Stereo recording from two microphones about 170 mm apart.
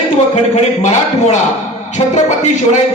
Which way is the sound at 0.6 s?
40° left (ahead or behind).